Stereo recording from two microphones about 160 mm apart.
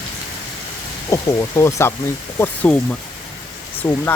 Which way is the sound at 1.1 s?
15° left (ahead or behind).